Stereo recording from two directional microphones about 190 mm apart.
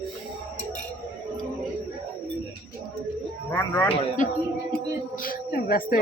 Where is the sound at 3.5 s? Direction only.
15° left (ahead or behind).